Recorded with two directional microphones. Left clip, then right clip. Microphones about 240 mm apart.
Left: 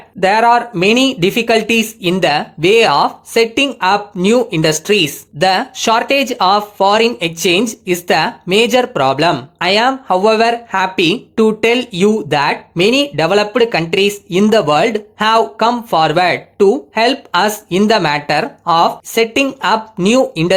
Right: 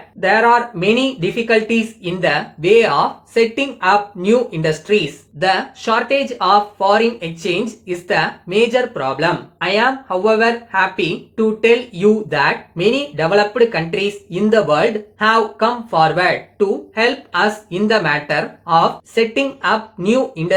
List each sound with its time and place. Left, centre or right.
0.2 s speech: left